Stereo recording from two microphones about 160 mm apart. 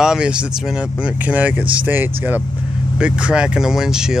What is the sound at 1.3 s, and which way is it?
Speech, 10° right (ahead or behind).